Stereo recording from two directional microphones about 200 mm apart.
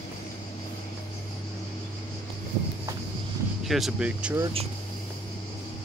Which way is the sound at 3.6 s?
Centre (ahead or behind).